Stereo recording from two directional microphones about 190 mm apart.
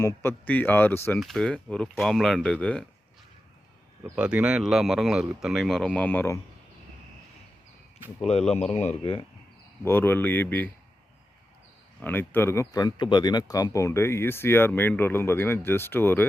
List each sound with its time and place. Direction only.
0.0 s speech: 15° left (ahead or behind)
4.0 s speech: 5° right (ahead or behind); by 6.4 s 10° left (ahead or behind)
8.2 s speech: 35° left (ahead or behind)
9.8 s speech: 10° left (ahead or behind)
11.9 s speech: 10° left (ahead or behind)